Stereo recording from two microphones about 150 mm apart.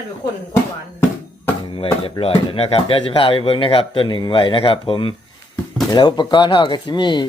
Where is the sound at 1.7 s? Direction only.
40° left (ahead or behind).